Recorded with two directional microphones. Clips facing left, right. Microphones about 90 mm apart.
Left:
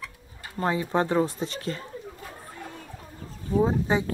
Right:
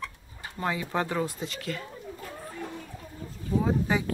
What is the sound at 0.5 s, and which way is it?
Speech, 30° left (ahead or behind).